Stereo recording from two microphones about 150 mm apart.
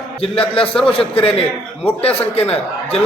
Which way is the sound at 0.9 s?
40° left (ahead or behind).